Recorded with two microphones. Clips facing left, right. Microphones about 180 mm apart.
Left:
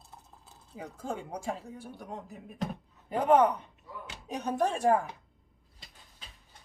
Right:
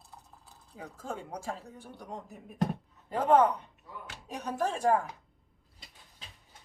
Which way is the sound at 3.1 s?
15° left (ahead or behind).